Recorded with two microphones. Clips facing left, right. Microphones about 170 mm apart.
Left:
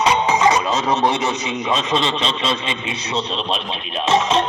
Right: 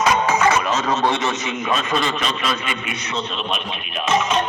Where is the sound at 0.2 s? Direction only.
15° left (ahead or behind).